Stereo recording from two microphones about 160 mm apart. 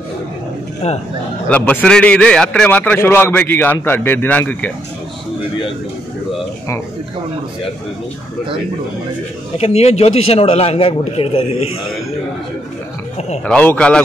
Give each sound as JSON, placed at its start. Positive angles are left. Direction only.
{"t": 0.8, "sound": "speech", "side_deg": 45}
{"t": 1.5, "sound": "a man's voice", "side_deg": 10}
{"t": 9.6, "sound": "a man's voice", "side_deg": 40}
{"t": 13.5, "sound": "a man's voice", "side_deg": 5}